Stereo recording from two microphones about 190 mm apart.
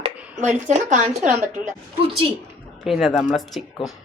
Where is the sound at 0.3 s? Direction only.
40° right (ahead or behind).